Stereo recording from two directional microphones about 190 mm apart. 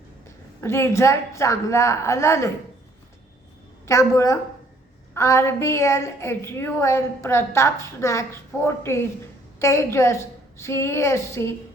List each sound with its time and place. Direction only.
0.6 s a woman's voice: 15° left (ahead or behind)
3.8 s a woman's voice: 15° left (ahead or behind)